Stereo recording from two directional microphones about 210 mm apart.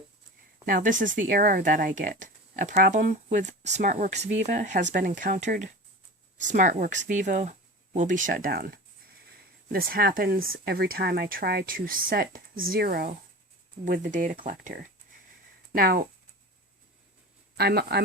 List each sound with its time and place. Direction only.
0.6 s speech: 40° right (ahead or behind)
17.6 s speech: 50° right (ahead or behind)